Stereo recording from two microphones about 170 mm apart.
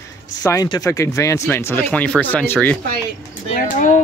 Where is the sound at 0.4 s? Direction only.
20° left (ahead or behind).